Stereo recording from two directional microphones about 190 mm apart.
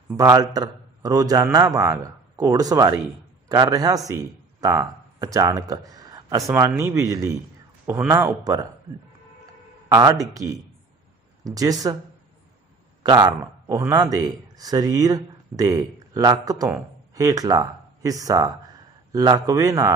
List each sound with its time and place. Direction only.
0.1 s speech: 20° right (ahead or behind)
9.8 s speech: 20° right (ahead or behind)
13.0 s speech: 20° right (ahead or behind)